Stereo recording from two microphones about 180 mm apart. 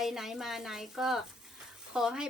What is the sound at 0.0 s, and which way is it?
Speech, centre (ahead or behind).